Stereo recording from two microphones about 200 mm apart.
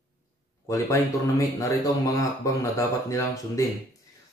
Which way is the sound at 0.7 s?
15° left (ahead or behind).